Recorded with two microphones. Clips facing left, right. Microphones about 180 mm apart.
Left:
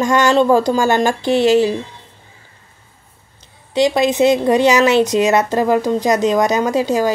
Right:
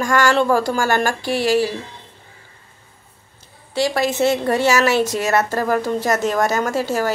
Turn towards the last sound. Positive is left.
turn(degrees=15)  # may be behind; listen again after turning